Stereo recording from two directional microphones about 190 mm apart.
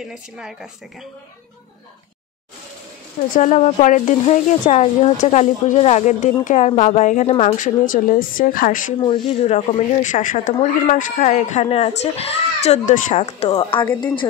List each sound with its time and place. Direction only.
0.1 s speech: 5° right (ahead or behind)
3.3 s a woman's voice: 40° left (ahead or behind)
9.0 s speech: 30° left (ahead or behind)